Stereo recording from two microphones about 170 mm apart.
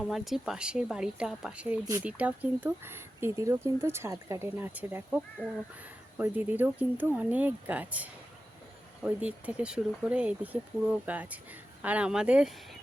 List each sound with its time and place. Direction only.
0.0 s speech: centre (ahead or behind)
1.8 s speech: 20° right (ahead or behind)
2.0 s speech: 10° right (ahead or behind)